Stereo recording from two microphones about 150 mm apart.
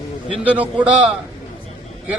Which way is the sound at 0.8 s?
5° right (ahead or behind).